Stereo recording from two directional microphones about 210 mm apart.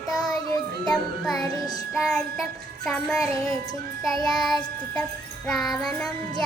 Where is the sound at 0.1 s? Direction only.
Centre (ahead or behind).